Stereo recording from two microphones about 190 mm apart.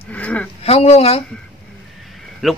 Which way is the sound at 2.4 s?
Centre (ahead or behind).